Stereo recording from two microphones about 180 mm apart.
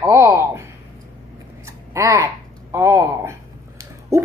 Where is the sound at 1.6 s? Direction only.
15° right (ahead or behind).